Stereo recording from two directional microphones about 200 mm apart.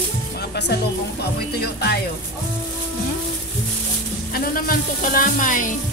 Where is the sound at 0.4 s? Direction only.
60° left (ahead or behind).